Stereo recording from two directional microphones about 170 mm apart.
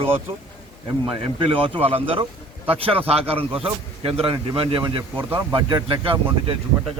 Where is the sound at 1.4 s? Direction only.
30° right (ahead or behind).